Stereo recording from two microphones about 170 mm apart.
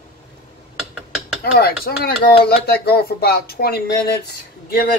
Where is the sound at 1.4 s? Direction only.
65° left (ahead or behind).